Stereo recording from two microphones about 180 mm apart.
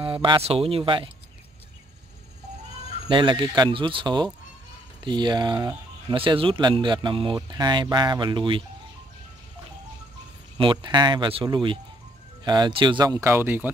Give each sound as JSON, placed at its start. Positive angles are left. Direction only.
{"t": 0.0, "sound": "speech", "side_deg": -30}
{"t": 3.1, "sound": "speech", "side_deg": -25}
{"t": 10.6, "sound": "speech", "side_deg": -25}